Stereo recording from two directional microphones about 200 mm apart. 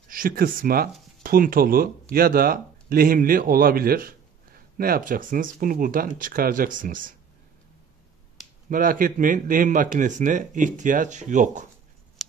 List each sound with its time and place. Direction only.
0.1 s speech: 45° right (ahead or behind)
8.6 s speech: 45° right (ahead or behind)
12.2 s scissors: centre (ahead or behind)